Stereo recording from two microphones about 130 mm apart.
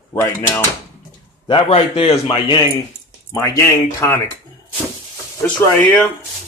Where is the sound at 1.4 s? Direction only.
40° left (ahead or behind).